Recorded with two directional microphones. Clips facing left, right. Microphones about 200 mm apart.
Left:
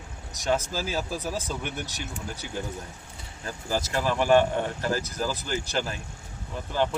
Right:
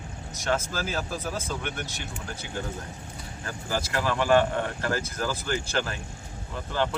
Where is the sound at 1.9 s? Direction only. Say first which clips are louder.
Left 1 dB; 40° left (ahead or behind).